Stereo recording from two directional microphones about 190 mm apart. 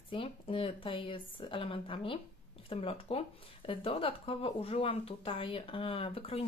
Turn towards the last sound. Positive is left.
turn(degrees=30)  # may be behind; listen again after turning